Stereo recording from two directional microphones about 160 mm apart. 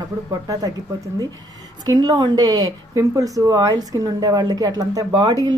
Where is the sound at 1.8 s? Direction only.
25° right (ahead or behind).